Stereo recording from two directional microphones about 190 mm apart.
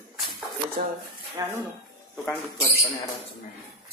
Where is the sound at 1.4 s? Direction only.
20° right (ahead or behind).